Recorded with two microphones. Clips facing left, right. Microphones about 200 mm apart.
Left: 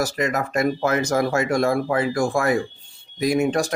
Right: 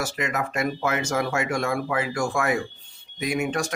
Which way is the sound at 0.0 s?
35° left (ahead or behind).